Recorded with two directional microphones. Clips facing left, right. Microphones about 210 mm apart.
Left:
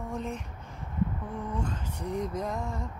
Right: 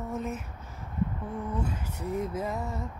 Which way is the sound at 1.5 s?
5° right (ahead or behind).